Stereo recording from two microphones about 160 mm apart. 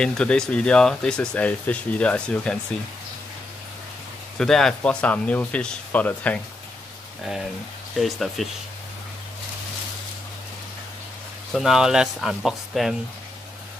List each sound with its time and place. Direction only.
0.0 s speech: 5° left (ahead or behind)
4.4 s speech: centre (ahead or behind)
8.0 s speech: centre (ahead or behind)
11.5 s speech: 5° right (ahead or behind)